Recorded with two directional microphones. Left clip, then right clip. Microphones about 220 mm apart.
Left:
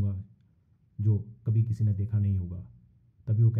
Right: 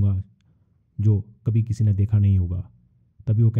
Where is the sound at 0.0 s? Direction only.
30° right (ahead or behind).